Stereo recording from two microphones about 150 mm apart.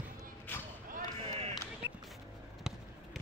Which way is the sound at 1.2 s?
40° right (ahead or behind).